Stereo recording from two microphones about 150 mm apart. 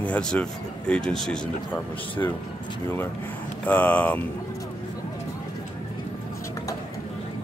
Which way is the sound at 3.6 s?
10° left (ahead or behind).